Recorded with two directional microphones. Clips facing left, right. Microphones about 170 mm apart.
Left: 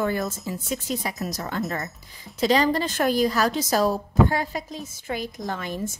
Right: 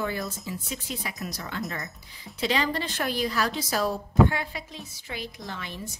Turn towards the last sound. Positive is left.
turn(degrees=45)  # may be behind; listen again after turning